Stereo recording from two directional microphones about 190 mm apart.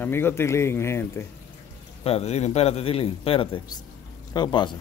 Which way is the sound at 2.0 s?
35° left (ahead or behind).